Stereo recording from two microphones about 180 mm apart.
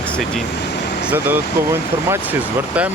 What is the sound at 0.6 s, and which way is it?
Vehicle, 65° left (ahead or behind).